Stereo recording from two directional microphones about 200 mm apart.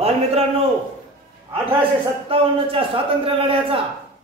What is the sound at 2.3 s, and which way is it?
A man's voice, 30° right (ahead or behind).